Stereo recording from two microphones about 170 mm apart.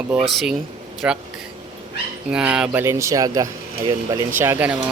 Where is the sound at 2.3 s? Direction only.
5° right (ahead or behind).